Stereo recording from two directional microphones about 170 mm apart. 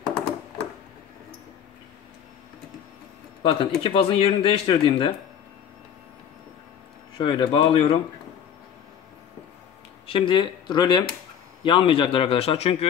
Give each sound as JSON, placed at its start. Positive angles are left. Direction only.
{"t": 3.4, "sound": "speech", "side_deg": 30}
{"t": 7.2, "sound": "speech", "side_deg": 30}
{"t": 10.0, "sound": "speech", "side_deg": 30}